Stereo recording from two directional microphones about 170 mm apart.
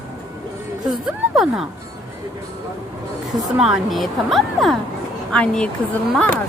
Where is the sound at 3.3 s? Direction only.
Centre (ahead or behind).